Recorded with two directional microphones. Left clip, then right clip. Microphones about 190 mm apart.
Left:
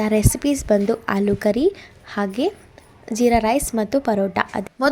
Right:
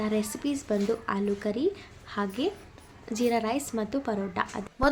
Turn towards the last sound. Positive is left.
turn(degrees=40)  # may be behind; listen again after turning